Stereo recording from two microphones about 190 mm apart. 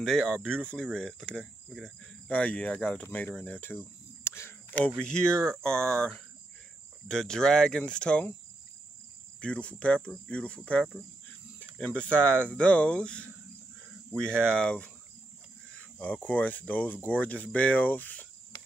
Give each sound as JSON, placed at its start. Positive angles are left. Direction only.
{"t": 0.0, "sound": "speech", "side_deg": 5}
{"t": 9.4, "sound": "speech", "side_deg": 5}
{"t": 16.0, "sound": "speech", "side_deg": 10}